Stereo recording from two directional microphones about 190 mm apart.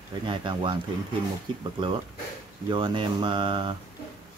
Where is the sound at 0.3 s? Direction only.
25° right (ahead or behind).